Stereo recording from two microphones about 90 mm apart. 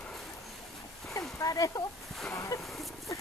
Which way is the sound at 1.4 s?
40° left (ahead or behind).